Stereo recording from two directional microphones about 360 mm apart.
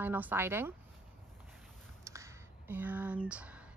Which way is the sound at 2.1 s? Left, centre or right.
Centre.